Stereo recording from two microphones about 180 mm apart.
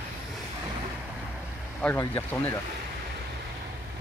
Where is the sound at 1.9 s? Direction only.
15° left (ahead or behind).